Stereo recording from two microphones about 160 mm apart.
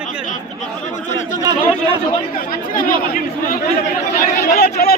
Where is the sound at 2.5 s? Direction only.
65° left (ahead or behind).